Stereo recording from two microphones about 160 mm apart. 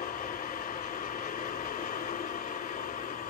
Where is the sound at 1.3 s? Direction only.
55° left (ahead or behind).